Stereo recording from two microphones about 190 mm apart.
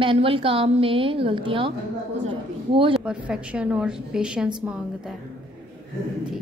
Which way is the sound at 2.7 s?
30° right (ahead or behind).